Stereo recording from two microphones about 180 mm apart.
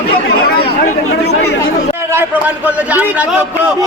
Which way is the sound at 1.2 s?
70° left (ahead or behind).